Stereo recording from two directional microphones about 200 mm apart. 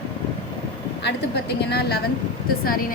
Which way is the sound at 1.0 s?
55° left (ahead or behind).